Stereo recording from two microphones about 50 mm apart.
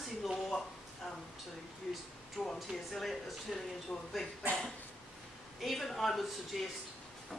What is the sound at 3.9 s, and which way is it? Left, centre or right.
Speech, centre.